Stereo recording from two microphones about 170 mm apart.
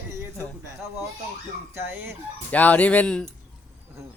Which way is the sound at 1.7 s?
15° right (ahead or behind).